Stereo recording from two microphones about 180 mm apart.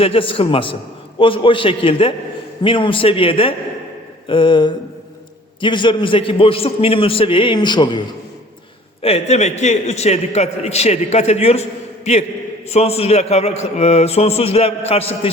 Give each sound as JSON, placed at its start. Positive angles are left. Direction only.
{"t": 0.0, "sound": "a man's voice", "side_deg": 30}